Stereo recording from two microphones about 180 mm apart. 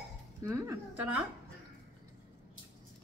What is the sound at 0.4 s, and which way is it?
Speech, 15° right (ahead or behind).